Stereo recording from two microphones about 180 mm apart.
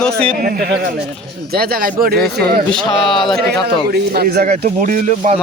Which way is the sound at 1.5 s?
55° right (ahead or behind).